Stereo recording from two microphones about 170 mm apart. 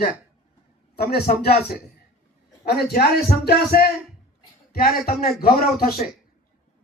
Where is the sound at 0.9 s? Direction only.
65° left (ahead or behind).